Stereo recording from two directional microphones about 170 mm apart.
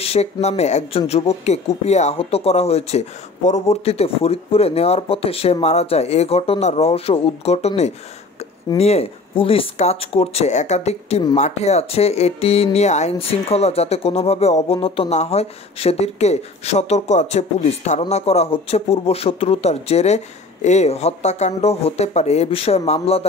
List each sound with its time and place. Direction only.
0.0 s speech: 35° left (ahead or behind)